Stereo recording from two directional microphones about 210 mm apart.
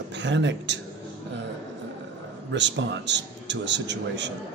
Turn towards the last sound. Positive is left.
turn(degrees=-55)  # may be behind; listen again after turning